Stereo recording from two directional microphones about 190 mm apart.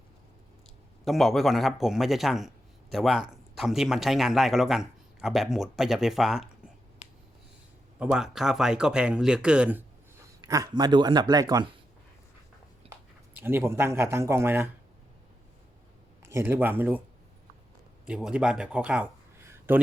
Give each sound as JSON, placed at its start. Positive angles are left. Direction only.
{"t": 1.0, "sound": "speech", "side_deg": 0}
{"t": 7.9, "sound": "speech", "side_deg": -5}
{"t": 10.4, "sound": "speech", "side_deg": -20}
{"t": 13.3, "sound": "speech", "side_deg": -10}
{"t": 16.3, "sound": "speech", "side_deg": -10}
{"t": 18.0, "sound": "speech", "side_deg": -5}